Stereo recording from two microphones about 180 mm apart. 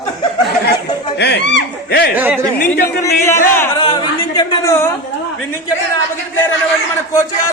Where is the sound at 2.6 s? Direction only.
50° left (ahead or behind).